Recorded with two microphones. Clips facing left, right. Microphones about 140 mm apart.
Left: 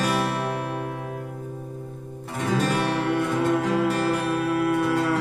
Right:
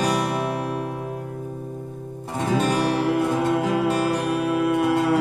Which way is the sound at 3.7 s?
15° right (ahead or behind).